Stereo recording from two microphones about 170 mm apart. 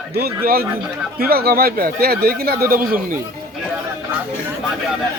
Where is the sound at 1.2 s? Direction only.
65° right (ahead or behind).